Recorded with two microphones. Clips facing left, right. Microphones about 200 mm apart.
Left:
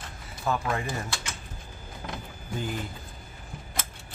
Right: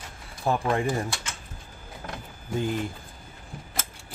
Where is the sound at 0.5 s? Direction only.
30° right (ahead or behind).